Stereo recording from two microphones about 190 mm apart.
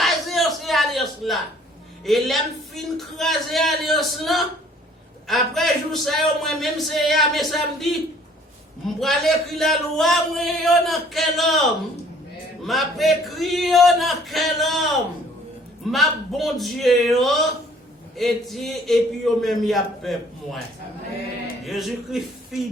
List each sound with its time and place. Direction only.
0.0 s a sound: centre (ahead or behind)
2.0 s a man's voice: centre (ahead or behind)
9.0 s a man's voice: centre (ahead or behind)
21.7 s a man's voice: centre (ahead or behind)